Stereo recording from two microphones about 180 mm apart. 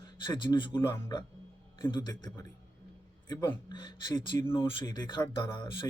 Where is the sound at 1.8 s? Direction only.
25° left (ahead or behind).